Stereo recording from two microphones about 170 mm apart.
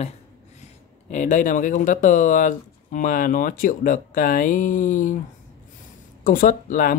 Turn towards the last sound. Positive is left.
turn(degrees=50)  # may be behind; listen again after turning